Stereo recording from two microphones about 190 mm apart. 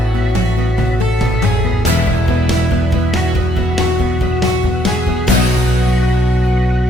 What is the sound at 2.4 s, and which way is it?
Music, centre (ahead or behind).